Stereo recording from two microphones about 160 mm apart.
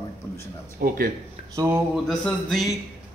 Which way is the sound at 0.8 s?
65° right (ahead or behind).